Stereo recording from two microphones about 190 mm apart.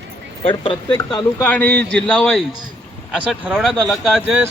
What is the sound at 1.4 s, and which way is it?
A man's voice, 10° left (ahead or behind).